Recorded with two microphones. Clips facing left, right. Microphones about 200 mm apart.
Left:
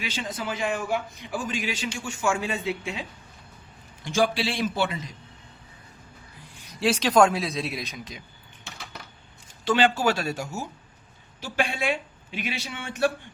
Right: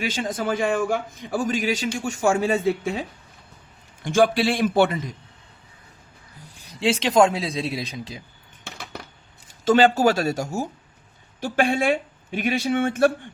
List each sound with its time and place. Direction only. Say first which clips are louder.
0.0 s a man's voice: right 6 dB; 45° right (ahead or behind)
4.0 s a man's voice: right 6 dB; 55° right (ahead or behind)
6.7 s speech: right 2 dB; 25° right (ahead or behind)
9.6 s a man's voice: right 5 dB; 40° right (ahead or behind)